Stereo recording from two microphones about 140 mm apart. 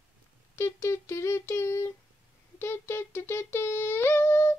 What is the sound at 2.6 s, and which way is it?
Humming, 15° left (ahead or behind).